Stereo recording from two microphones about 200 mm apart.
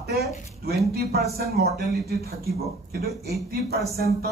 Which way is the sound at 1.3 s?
50° right (ahead or behind).